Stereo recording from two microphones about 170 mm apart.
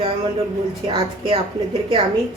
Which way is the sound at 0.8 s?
35° right (ahead or behind).